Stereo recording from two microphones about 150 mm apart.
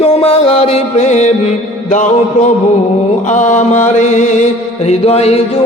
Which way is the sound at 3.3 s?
55° left (ahead or behind).